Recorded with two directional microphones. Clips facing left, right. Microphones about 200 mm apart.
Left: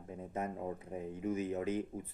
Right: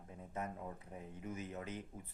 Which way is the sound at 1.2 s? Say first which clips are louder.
Left 10 dB; 15° left (ahead or behind).